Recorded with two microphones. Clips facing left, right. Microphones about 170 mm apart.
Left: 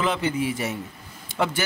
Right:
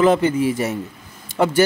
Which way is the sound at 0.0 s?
45° right (ahead or behind).